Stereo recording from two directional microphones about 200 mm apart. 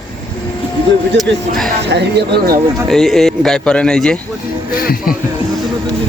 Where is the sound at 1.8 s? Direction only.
55° right (ahead or behind).